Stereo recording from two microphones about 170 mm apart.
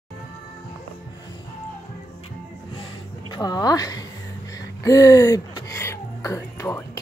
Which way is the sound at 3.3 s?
25° left (ahead or behind).